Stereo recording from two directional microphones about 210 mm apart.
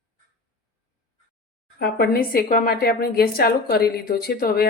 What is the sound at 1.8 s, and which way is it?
A woman's voice, 45° left (ahead or behind).